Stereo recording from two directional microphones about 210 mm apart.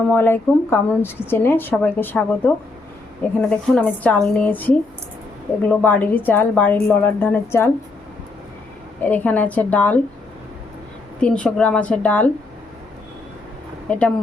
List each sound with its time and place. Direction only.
0.1 s a woman's voice: 10° left (ahead or behind)
3.5 s a woman's voice: 5° left (ahead or behind)
9.0 s a woman's voice: 10° left (ahead or behind)
11.2 s speech: 5° left (ahead or behind)
13.8 s speech: 5° left (ahead or behind)